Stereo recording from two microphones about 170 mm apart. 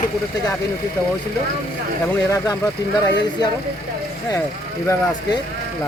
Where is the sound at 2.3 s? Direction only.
20° left (ahead or behind).